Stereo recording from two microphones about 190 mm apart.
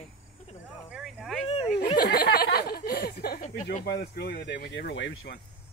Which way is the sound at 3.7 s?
60° left (ahead or behind).